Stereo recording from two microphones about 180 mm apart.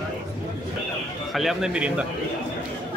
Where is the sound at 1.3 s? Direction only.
Centre (ahead or behind).